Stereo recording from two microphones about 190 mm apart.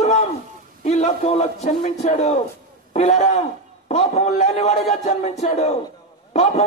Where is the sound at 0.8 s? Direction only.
35° left (ahead or behind).